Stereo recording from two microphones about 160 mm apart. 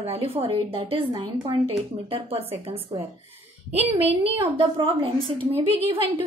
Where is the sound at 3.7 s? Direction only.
40° right (ahead or behind).